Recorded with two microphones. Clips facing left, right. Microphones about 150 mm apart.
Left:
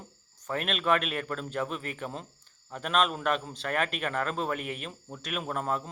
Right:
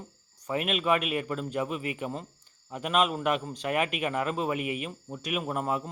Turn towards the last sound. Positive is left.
turn(degrees=-10)  # may be behind; listen again after turning